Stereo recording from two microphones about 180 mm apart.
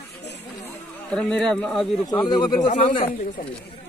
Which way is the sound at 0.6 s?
5° left (ahead or behind).